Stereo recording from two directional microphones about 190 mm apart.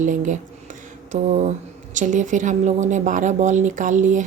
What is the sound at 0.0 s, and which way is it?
Speech, 40° right (ahead or behind).